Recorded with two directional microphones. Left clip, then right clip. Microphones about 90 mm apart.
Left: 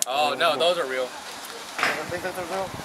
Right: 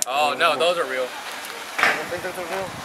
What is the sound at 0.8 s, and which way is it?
Speech, 20° right (ahead or behind).